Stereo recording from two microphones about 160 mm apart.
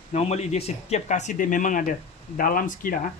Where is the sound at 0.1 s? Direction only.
45° left (ahead or behind).